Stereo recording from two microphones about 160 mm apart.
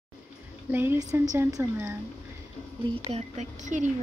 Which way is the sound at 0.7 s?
15° right (ahead or behind).